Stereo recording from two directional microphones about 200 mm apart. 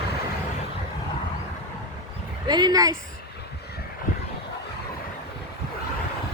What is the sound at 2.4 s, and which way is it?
Speech, 20° right (ahead or behind).